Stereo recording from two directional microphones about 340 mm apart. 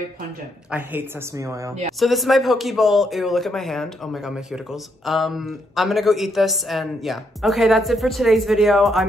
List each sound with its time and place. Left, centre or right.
0.7 s speech: centre
2.0 s speech: centre